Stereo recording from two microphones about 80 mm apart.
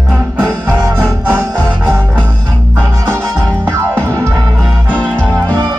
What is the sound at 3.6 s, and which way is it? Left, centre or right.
Music, right.